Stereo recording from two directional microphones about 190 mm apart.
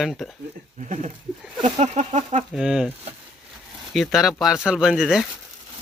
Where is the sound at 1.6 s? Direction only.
40° right (ahead or behind).